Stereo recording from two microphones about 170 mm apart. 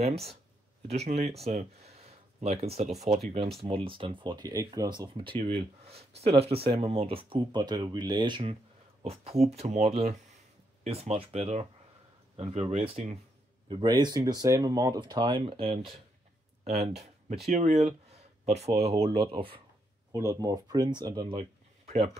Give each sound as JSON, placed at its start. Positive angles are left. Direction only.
{"t": 0.0, "sound": "speech", "side_deg": -35}
{"t": 13.7, "sound": "speech", "side_deg": -25}
{"t": 20.1, "sound": "speech", "side_deg": -20}